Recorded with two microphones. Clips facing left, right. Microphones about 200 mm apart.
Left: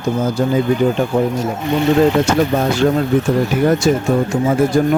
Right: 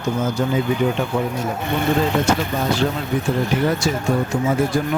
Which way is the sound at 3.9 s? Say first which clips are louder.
Left 7 dB; 50° left (ahead or behind).